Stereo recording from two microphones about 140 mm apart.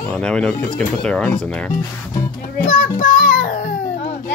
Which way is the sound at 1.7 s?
65° left (ahead or behind).